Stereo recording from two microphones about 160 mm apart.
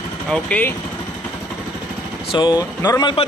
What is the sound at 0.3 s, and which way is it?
Speech, 10° left (ahead or behind).